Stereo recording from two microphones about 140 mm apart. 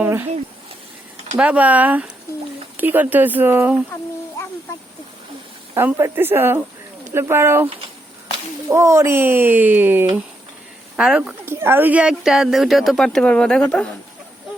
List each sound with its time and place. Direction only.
0.0 s speech: 15° right (ahead or behind)
1.4 s speech: 10° right (ahead or behind)
5.7 s speech: 15° right (ahead or behind)
8.7 s speech: 20° right (ahead or behind); by 13.9 s 10° left (ahead or behind)